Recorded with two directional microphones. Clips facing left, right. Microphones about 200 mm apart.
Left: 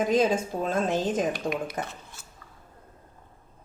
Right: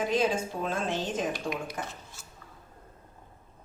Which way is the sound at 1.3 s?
60° left (ahead or behind).